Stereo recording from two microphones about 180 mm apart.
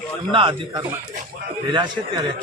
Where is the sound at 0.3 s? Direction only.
30° right (ahead or behind).